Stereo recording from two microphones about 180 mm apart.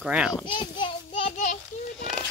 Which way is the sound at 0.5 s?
25° left (ahead or behind).